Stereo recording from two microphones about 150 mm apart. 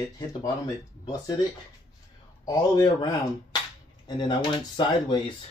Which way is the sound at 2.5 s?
25° left (ahead or behind).